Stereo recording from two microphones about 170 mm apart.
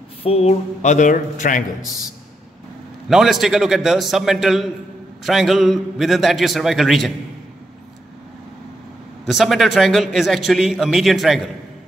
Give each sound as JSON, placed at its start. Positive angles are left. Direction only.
{"t": 0.2, "sound": "speech", "side_deg": 35}
{"t": 3.1, "sound": "a man's voice", "side_deg": 0}
{"t": 9.2, "sound": "a man's voice", "side_deg": 0}